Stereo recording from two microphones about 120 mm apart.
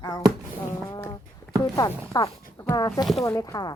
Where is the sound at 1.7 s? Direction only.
30° left (ahead or behind).